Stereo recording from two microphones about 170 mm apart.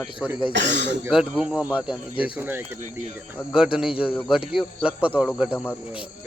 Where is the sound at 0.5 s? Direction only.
90° right.